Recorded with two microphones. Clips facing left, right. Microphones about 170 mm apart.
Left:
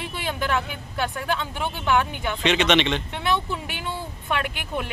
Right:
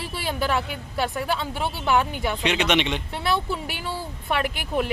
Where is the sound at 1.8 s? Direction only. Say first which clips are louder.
Even; 35° right (ahead or behind).